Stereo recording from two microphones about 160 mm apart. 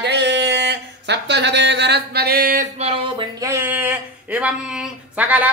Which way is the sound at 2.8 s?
40° right (ahead or behind).